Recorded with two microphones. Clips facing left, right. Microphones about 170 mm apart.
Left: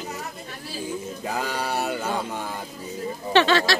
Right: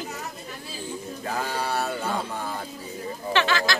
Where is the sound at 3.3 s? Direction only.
30° left (ahead or behind).